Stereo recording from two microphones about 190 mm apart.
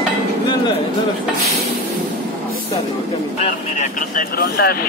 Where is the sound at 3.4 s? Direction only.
40° left (ahead or behind).